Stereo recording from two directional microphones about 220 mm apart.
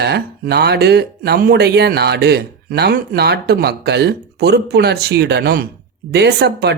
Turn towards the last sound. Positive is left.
turn(degrees=-50)  # may be behind; listen again after turning